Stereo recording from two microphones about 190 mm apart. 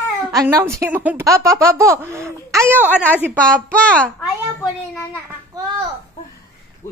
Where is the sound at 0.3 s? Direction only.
15° right (ahead or behind).